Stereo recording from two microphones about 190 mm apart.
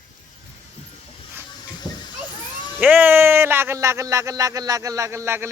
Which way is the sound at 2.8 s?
10° right (ahead or behind).